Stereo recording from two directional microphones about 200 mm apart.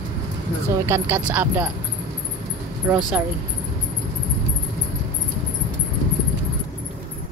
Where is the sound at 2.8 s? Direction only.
10° right (ahead or behind).